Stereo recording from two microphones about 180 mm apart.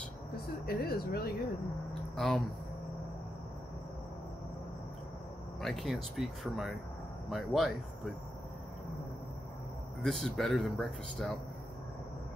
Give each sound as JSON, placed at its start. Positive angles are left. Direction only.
{"t": 0.7, "sound": "speech", "side_deg": 60}
{"t": 2.1, "sound": "speech", "side_deg": 5}
{"t": 5.6, "sound": "speech", "side_deg": 0}
{"t": 10.0, "sound": "speech", "side_deg": 0}